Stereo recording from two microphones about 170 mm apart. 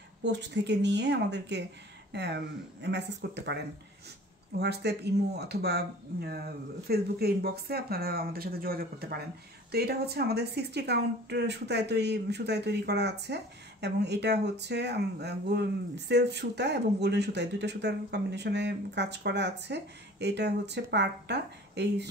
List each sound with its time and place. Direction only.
0.2 s a woman's voice: 90° right